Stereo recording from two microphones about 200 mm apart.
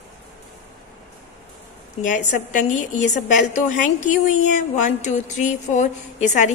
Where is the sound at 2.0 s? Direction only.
40° left (ahead or behind).